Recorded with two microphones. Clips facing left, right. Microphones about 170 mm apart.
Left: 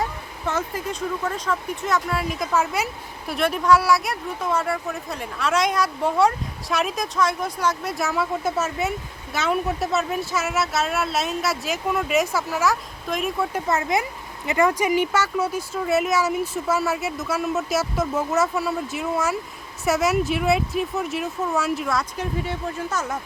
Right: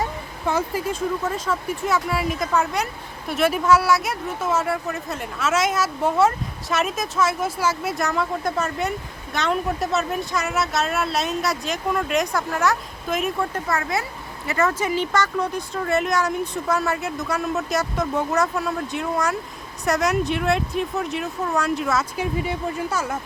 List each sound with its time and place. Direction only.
0.4 s speech: 10° right (ahead or behind)
13.7 s speech: 20° left (ahead or behind); by 23.1 s 10° right (ahead or behind)